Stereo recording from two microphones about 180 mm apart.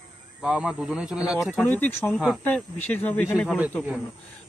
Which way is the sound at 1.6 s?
10° left (ahead or behind).